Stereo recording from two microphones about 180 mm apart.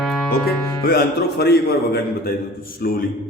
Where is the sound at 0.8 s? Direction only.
60° left (ahead or behind).